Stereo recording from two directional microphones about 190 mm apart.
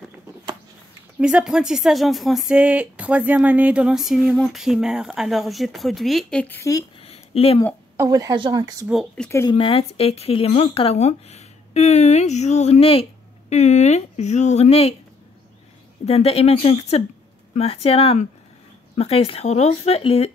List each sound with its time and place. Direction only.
1.2 s speech: 5° right (ahead or behind); by 6.8 s 10° left (ahead or behind)
7.0 s a sound: 30° left (ahead or behind)
8.0 s speech: 20° right (ahead or behind)
8.8 s speech: centre (ahead or behind)
9.3 s speech: 15° left (ahead or behind)
9.6 s speech: 30° left (ahead or behind)
16.1 s speech: 30° left (ahead or behind)